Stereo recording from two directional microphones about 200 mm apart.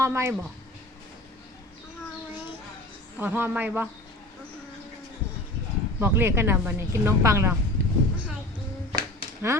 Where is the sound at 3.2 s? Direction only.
10° right (ahead or behind).